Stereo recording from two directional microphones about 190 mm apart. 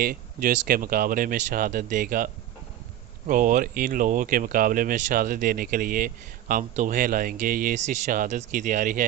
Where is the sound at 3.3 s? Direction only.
45° right (ahead or behind).